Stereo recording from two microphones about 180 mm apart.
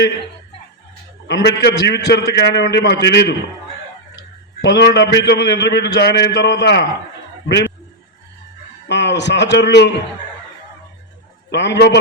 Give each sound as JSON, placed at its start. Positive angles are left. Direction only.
{"t": 1.3, "sound": "a man's voice", "side_deg": 65}
{"t": 4.6, "sound": "a man's voice", "side_deg": 70}
{"t": 8.9, "sound": "a man's voice", "side_deg": 75}
{"t": 11.5, "sound": "a man's voice", "side_deg": 75}